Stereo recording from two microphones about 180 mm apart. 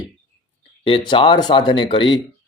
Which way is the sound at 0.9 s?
30° left (ahead or behind).